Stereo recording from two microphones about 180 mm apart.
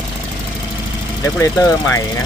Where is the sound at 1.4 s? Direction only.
15° left (ahead or behind).